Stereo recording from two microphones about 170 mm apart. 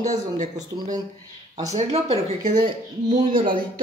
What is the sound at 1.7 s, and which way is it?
Speech, 40° right (ahead or behind).